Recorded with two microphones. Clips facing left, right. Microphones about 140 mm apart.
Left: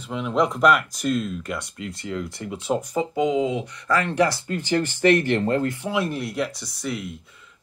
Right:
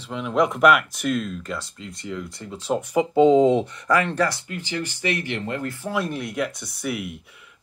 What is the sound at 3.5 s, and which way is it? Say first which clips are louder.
Speech: right 7 dB; 10° left (ahead or behind).